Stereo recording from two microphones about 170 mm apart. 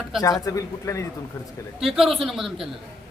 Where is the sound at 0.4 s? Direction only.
20° left (ahead or behind).